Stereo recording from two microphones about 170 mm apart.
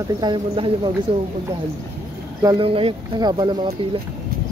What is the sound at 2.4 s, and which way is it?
Speech, 25° right (ahead or behind).